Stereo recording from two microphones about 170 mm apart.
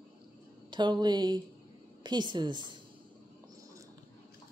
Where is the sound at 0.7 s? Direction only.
25° right (ahead or behind).